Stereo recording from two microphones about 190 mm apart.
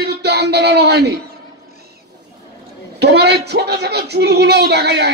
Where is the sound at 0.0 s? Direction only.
60° right (ahead or behind).